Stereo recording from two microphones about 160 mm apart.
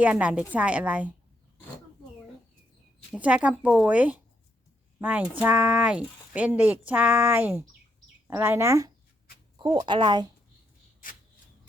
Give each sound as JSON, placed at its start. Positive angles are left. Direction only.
{"t": 0.0, "sound": "a woman's voice", "side_deg": -10}
{"t": 3.2, "sound": "a woman's voice", "side_deg": -10}
{"t": 9.8, "sound": "speech", "side_deg": -30}